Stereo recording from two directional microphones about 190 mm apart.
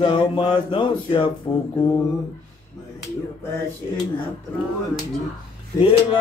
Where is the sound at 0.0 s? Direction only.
25° left (ahead or behind).